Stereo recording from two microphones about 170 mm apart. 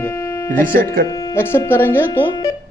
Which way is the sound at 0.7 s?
55° right (ahead or behind).